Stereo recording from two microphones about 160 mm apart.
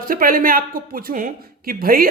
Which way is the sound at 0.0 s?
60° right (ahead or behind).